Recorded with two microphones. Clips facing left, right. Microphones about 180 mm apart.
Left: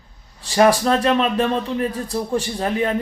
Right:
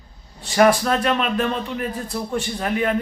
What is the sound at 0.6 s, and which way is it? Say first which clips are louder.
Speech: left 1 dB; 30° left (ahead or behind).